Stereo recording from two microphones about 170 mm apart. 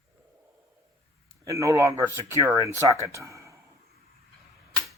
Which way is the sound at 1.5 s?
20° right (ahead or behind).